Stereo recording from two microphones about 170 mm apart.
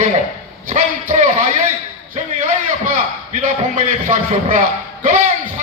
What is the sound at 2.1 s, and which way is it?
A man's voice, 50° right (ahead or behind).